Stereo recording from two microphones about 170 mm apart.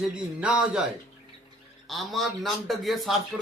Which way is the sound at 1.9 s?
Centre (ahead or behind).